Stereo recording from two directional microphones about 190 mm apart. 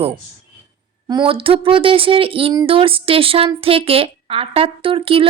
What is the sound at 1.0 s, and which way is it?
A woman's voice, 25° right (ahead or behind).